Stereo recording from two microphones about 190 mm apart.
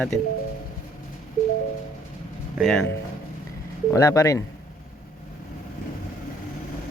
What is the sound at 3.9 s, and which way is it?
Speech, 15° left (ahead or behind).